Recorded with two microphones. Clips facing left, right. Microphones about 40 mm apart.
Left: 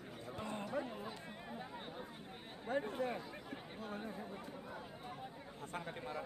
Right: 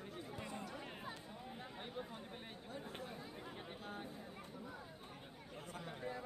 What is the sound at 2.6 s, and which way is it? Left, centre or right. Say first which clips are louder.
Speech: left 14 dB; left.